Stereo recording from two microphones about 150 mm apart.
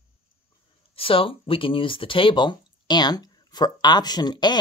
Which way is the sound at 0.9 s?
35° left (ahead or behind).